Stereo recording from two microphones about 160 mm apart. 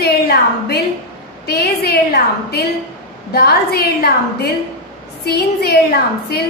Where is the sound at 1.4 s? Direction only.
90° left.